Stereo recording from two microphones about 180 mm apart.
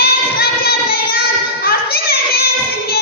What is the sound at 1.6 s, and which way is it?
Children playing, 60° left (ahead or behind).